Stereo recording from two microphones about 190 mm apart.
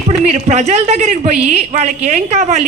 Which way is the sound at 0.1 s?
35° right (ahead or behind).